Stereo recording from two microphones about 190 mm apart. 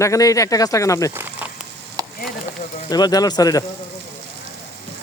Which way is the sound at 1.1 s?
10° right (ahead or behind).